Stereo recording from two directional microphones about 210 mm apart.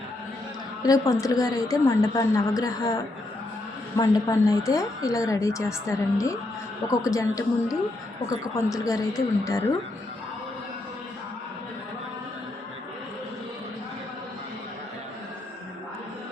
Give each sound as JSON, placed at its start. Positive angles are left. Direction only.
{"t": 0.8, "sound": "a woman's voice", "side_deg": 15}